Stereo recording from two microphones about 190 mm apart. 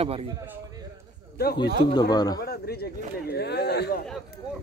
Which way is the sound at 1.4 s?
55° left (ahead or behind).